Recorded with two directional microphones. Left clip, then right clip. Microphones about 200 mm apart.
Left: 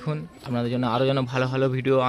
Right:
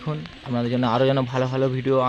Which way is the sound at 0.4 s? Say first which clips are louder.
Right 3 dB; 15° right (ahead or behind).